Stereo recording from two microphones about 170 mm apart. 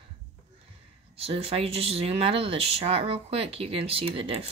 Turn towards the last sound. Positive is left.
turn(degrees=-35)  # may be behind; listen again after turning